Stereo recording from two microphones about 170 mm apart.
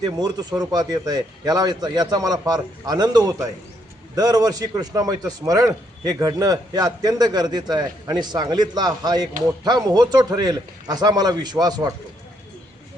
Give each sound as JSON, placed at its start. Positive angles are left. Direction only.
{"t": 0.0, "sound": "a man's voice", "side_deg": -25}